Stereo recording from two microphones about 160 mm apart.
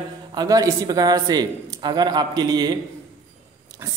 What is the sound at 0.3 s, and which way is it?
A man's voice, 25° right (ahead or behind).